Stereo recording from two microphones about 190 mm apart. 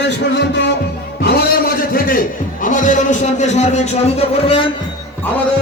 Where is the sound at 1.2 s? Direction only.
55° left (ahead or behind); by 4.7 s 30° left (ahead or behind).